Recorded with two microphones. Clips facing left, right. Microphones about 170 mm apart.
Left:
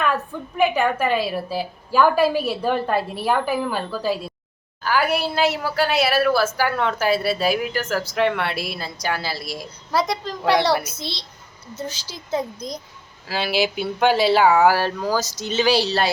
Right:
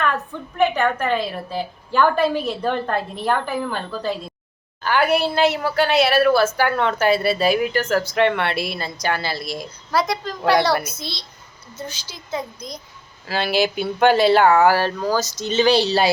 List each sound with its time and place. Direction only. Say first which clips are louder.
0.0 s a woman's voice: even; 5° left (ahead or behind)
9.9 s a woman's voice: right 1 dB; 25° left (ahead or behind)
10.4 s a woman's voice: right 1 dB; centre (ahead or behind)
10.9 s a woman's voice: left 1 dB; 25° left (ahead or behind)
13.2 s a woman's voice: right 2 dB; 5° left (ahead or behind)